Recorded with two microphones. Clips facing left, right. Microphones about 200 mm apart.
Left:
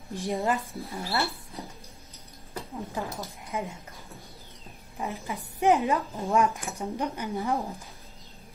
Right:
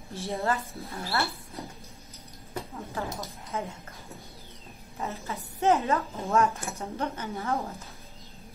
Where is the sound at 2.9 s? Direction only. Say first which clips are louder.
Right 1 dB; 15° left (ahead or behind).